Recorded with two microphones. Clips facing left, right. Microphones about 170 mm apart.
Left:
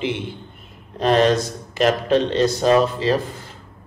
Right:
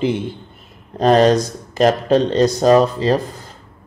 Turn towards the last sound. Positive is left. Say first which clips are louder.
# right 3 dB
turn(degrees=-40)  # may be behind; listen again after turning